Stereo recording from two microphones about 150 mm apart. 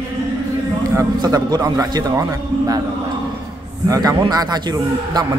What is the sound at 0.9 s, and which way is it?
A man's voice, 25° right (ahead or behind).